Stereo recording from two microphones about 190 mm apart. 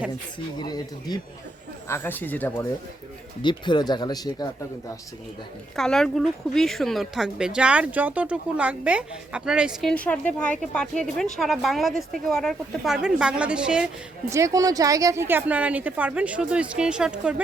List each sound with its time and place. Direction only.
0.6 s speech: 20° left (ahead or behind)
1.9 s a woman's voice: 10° left (ahead or behind)
3.4 s speech: 25° left (ahead or behind)
5.7 s speech: 5° left (ahead or behind)
9.9 s a woman's voice: 5° left (ahead or behind)
14.3 s a woman's voice: 15° right (ahead or behind)